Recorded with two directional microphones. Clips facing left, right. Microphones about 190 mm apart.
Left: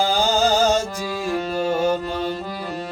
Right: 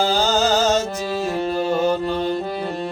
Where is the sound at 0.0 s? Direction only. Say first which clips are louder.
Even; 10° left (ahead or behind).